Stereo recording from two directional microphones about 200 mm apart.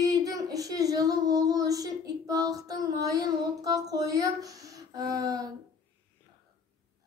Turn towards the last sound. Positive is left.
turn(degrees=-20)  # may be behind; listen again after turning